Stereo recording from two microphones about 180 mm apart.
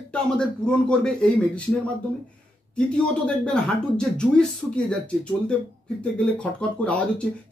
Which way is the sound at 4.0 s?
5° left (ahead or behind).